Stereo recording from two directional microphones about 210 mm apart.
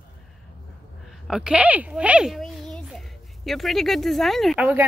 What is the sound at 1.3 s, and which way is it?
Speech, 5° right (ahead or behind).